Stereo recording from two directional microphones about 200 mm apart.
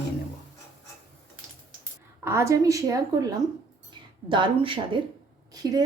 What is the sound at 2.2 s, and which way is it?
A woman's voice, 15° right (ahead or behind).